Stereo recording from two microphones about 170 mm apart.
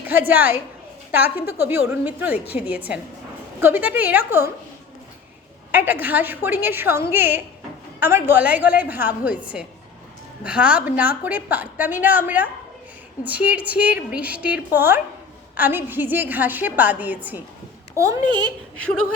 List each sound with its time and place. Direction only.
0.0 s a woman's voice: 10° right (ahead or behind)
5.7 s a woman's voice: 10° right (ahead or behind)